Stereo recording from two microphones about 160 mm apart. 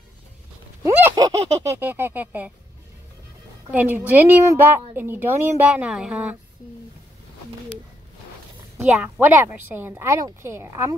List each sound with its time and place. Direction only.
0.8 s speech: 20° right (ahead or behind)
3.7 s a woman's voice: 10° right (ahead or behind)
8.9 s a woman's voice: 10° right (ahead or behind)